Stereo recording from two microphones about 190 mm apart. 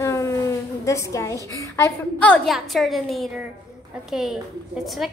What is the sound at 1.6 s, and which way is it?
A child's voice, 15° left (ahead or behind).